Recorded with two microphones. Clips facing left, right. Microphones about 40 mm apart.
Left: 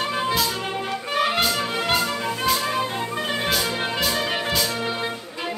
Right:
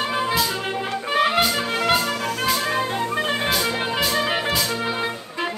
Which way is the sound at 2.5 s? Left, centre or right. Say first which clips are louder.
Right 1 dB; centre.